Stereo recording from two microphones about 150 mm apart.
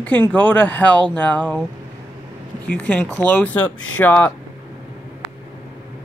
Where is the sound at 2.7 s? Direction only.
10° left (ahead or behind).